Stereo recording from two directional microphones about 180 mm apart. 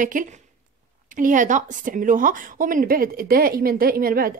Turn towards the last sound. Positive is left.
turn(degrees=-55)  # may be behind; listen again after turning